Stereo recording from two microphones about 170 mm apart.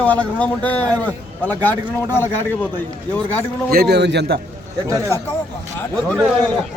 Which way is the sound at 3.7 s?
70° right (ahead or behind).